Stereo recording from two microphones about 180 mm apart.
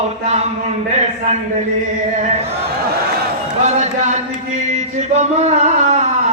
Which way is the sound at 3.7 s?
40° right (ahead or behind).